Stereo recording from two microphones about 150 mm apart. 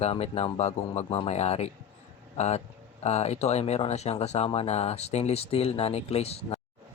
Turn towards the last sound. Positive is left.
turn(degrees=45)  # may be behind; listen again after turning